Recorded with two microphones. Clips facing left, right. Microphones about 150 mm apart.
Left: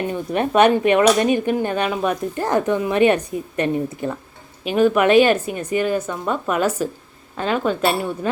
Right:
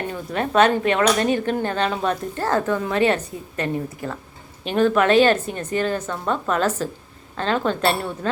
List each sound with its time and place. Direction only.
0.1 s speech: 15° left (ahead or behind)